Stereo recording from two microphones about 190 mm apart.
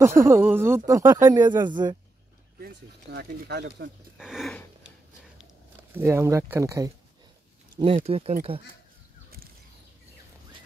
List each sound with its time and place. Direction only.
0.0 s speech: 15° right (ahead or behind)
2.6 s speech: 55° right (ahead or behind)
4.2 s a sound: centre (ahead or behind)
5.9 s speech: 15° right (ahead or behind)
7.7 s speech: 30° right (ahead or behind)